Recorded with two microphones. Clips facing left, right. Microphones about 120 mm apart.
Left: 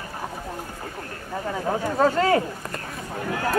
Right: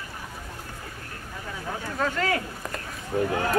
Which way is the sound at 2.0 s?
35° left (ahead or behind).